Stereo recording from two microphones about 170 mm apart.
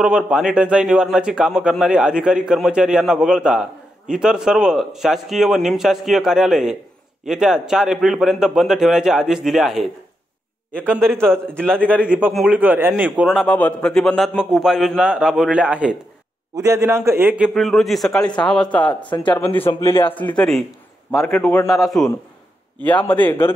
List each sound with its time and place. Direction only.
0.0 s a man's voice: 5° right (ahead or behind)
12.1 s a man's voice: 5° right (ahead or behind)
16.5 s a man's voice: 20° right (ahead or behind)
17.6 s a man's voice: centre (ahead or behind)
19.8 s a man's voice: 30° left (ahead or behind)
20.3 s a man's voice: 5° left (ahead or behind)